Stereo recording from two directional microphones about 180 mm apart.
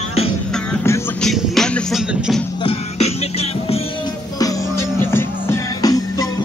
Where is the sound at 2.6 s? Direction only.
35° left (ahead or behind).